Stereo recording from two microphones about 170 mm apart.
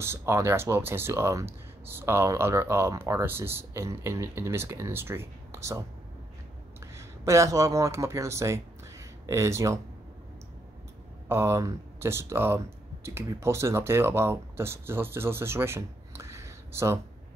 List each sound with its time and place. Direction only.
0.0 s speech: 15° right (ahead or behind)
6.8 s speech: 15° right (ahead or behind)
11.2 s speech: 15° right (ahead or behind)